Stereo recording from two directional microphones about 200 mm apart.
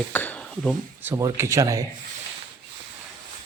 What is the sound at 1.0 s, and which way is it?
Speech, 15° right (ahead or behind).